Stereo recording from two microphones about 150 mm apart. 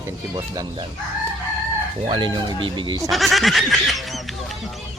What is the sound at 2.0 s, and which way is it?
Speech, 30° right (ahead or behind).